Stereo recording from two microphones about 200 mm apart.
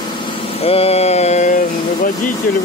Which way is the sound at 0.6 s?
30° left (ahead or behind).